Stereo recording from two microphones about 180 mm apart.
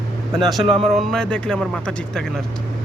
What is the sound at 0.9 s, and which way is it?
Speech, centre (ahead or behind).